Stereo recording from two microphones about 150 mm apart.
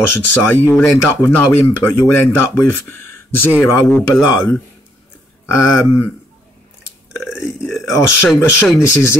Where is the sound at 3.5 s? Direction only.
15° left (ahead or behind).